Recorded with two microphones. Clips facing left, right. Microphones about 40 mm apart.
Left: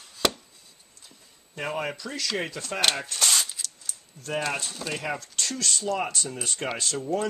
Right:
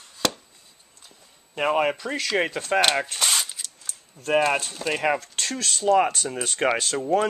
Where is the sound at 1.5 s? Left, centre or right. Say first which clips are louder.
Right 8 dB; right.